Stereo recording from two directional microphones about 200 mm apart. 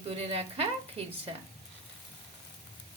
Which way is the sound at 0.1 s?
30° right (ahead or behind).